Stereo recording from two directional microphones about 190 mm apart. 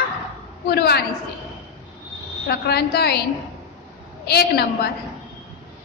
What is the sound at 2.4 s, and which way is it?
Speech, 60° left (ahead or behind).